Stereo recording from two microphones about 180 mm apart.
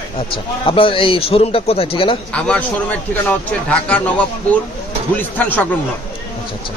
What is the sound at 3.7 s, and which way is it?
A man's voice, 10° left (ahead or behind).